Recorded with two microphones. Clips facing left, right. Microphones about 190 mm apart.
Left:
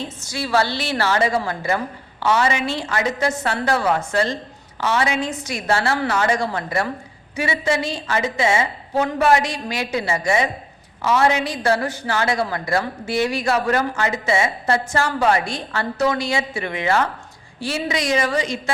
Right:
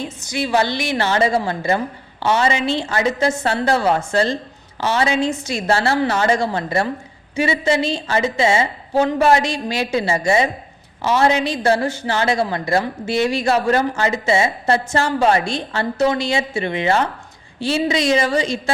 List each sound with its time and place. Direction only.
0.0 s a woman's voice: 15° right (ahead or behind)